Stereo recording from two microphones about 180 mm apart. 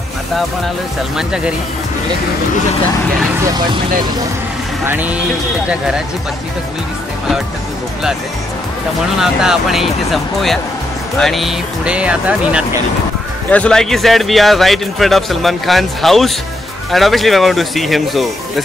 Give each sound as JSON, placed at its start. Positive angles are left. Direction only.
{"t": 1.1, "sound": "speech", "side_deg": -5}
{"t": 3.3, "sound": "speech", "side_deg": -20}
{"t": 4.8, "sound": "speech", "side_deg": -10}
{"t": 9.2, "sound": "speech", "side_deg": -5}
{"t": 13.5, "sound": "speech", "side_deg": 5}